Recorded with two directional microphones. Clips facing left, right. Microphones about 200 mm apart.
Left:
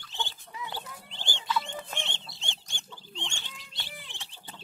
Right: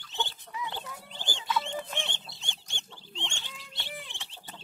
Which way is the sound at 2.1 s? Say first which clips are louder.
Left 1 dB; 25° left (ahead or behind).